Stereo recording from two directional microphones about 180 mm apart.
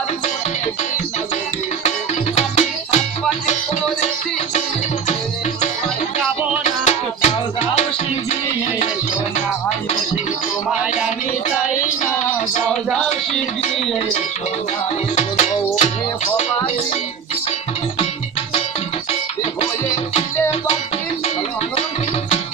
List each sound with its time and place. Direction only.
2.3 s music: 40° left (ahead or behind)
6.6 s music: 40° left (ahead or behind)
15.1 s music: 40° left (ahead or behind)